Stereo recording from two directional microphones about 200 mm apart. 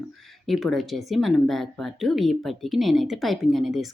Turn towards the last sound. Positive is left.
turn(degrees=0)  # may be behind; listen again after turning